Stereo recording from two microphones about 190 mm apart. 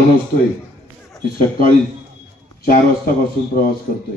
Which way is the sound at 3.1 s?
50° left (ahead or behind).